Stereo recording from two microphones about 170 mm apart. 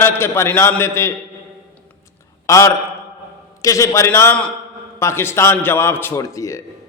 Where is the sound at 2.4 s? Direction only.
20° left (ahead or behind).